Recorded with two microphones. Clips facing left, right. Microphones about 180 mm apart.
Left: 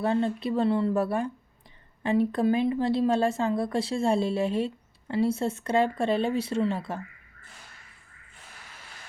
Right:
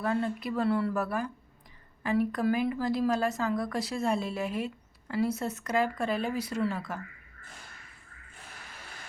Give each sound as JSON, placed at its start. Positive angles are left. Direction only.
{"t": 0.0, "sound": "speech", "side_deg": 25}